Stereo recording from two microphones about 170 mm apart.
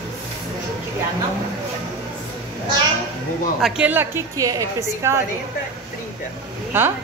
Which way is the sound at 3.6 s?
10° right (ahead or behind).